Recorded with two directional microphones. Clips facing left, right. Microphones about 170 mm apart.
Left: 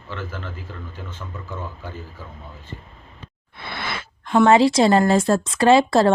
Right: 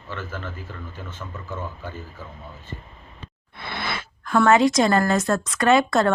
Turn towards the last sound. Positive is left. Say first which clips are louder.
# left 3 dB
turn(degrees=30)  # may be behind; listen again after turning